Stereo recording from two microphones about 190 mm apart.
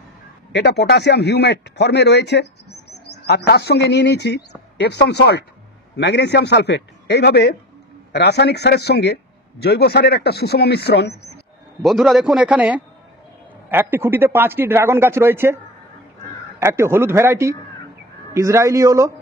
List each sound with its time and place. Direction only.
0.5 s speech: 60° left (ahead or behind)
11.8 s a man's voice: centre (ahead or behind); by 19.1 s 15° right (ahead or behind)